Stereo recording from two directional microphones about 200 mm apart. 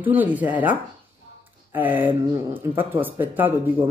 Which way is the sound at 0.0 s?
10° right (ahead or behind).